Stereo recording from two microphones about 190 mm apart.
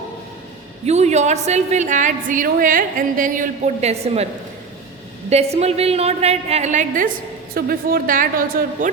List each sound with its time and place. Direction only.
0.9 s a woman's voice: 35° right (ahead or behind)
5.3 s a woman's voice: 35° right (ahead or behind)